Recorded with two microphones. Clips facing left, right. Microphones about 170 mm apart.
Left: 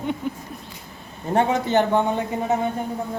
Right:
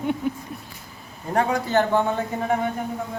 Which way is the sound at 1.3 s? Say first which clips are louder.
Left 2 dB; 25° left (ahead or behind).